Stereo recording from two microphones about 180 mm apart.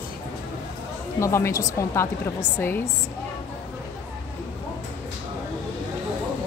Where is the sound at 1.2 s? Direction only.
15° left (ahead or behind).